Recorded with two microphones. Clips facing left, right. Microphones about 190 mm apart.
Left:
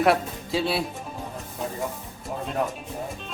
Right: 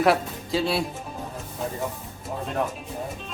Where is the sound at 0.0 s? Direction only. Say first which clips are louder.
Even; centre (ahead or behind).